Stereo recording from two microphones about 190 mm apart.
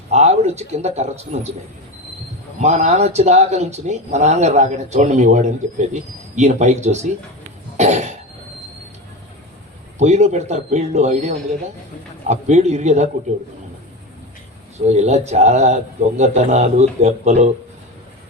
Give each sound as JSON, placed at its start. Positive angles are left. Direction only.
{"t": 0.1, "sound": "speech", "side_deg": -35}
{"t": 2.6, "sound": "speech", "side_deg": -35}
{"t": 7.8, "sound": "cough", "side_deg": -35}
{"t": 10.0, "sound": "speech", "side_deg": -35}
{"t": 14.8, "sound": "speech", "side_deg": -35}